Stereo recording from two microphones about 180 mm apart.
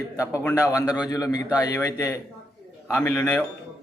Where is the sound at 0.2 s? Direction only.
15° left (ahead or behind).